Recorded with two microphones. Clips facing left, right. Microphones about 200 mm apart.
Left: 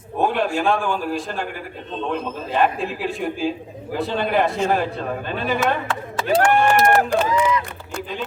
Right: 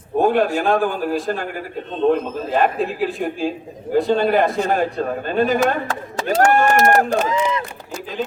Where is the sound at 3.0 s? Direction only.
Centre (ahead or behind).